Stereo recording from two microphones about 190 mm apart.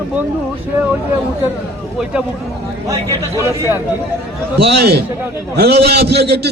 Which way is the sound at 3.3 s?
15° right (ahead or behind).